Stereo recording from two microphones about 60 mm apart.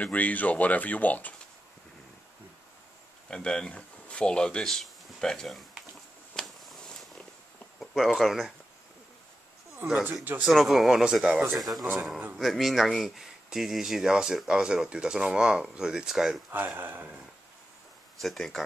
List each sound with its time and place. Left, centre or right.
0.0 s speech: left
3.3 s speech: centre
6.3 s a sound: centre
7.8 s speech: centre
9.8 s speech: right
10.4 s speech: centre
16.4 s speech: right
18.2 s speech: centre